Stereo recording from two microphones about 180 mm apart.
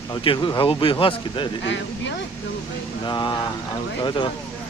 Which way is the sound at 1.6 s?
90° left.